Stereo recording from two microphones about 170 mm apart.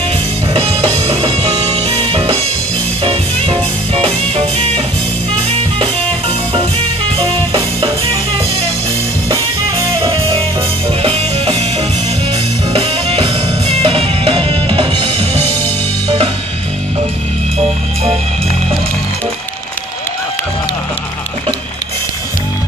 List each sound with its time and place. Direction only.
0.5 s music: 35° right (ahead or behind)
5.8 s music: 35° right (ahead or behind)
10.0 s music: 30° right (ahead or behind)
12.7 s music: 35° right (ahead or behind)